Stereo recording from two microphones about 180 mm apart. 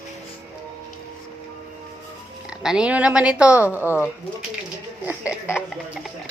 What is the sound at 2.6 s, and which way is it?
Speech, 5° right (ahead or behind).